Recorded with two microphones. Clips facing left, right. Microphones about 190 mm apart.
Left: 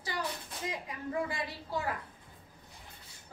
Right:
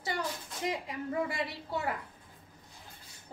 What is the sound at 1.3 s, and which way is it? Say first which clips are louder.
Speech: right 2 dB; 25° right (ahead or behind).